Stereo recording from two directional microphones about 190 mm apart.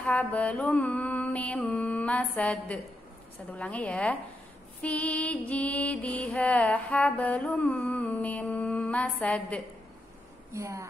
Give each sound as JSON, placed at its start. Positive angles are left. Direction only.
{"t": 0.0, "sound": "mantra", "side_deg": 10}
{"t": 10.5, "sound": "a woman's voice", "side_deg": -15}